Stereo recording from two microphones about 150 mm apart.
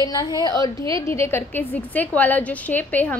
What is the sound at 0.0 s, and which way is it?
A woman's voice, 25° left (ahead or behind).